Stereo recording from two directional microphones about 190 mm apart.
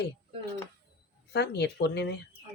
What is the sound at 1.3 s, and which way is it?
Speech, 60° left (ahead or behind).